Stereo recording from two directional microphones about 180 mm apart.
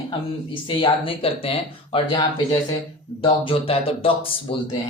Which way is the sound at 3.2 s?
30° left (ahead or behind).